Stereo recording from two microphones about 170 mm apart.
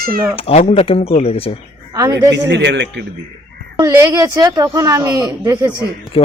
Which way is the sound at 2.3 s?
90° right.